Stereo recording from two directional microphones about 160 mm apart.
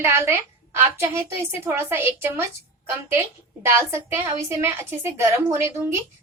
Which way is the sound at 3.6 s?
15° right (ahead or behind).